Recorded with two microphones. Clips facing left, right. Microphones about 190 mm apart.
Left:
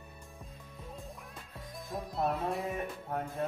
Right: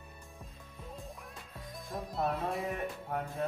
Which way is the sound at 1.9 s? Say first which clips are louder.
Left 1 dB; centre (ahead or behind).